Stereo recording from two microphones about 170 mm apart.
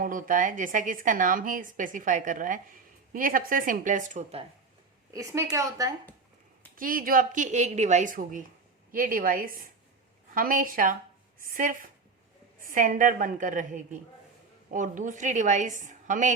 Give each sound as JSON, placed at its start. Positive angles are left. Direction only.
{"t": 0.0, "sound": "a woman's voice", "side_deg": -50}
{"t": 5.1, "sound": "speech", "side_deg": -20}
{"t": 6.7, "sound": "a woman's voice", "side_deg": -55}